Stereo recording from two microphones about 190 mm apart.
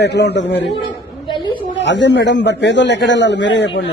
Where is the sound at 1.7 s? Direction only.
70° left (ahead or behind).